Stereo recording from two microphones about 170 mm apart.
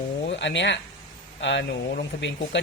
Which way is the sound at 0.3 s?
90° left.